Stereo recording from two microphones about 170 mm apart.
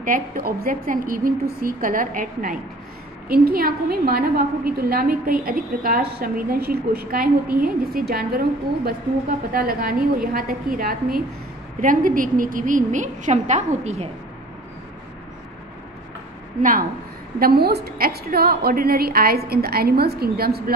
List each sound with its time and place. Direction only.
0.0 s a woman's voice: 55° right (ahead or behind)
17.4 s a woman's voice: 65° right (ahead or behind)